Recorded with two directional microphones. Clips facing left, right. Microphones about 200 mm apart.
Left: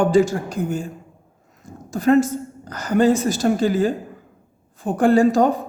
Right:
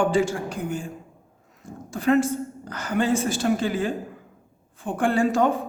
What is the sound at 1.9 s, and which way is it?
A woman's voice, 40° left (ahead or behind).